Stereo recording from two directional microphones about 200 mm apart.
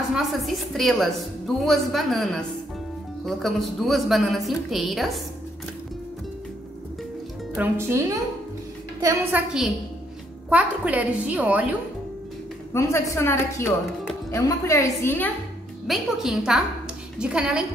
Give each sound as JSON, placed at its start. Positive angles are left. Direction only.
{"t": 0.1, "sound": "a woman's voice", "side_deg": 0}
{"t": 3.3, "sound": "a woman's voice", "side_deg": 0}
{"t": 7.5, "sound": "a woman's voice", "side_deg": -10}
{"t": 9.0, "sound": "a woman's voice", "side_deg": -5}
{"t": 12.7, "sound": "a woman's voice", "side_deg": 15}
{"t": 15.9, "sound": "a woman's voice", "side_deg": 0}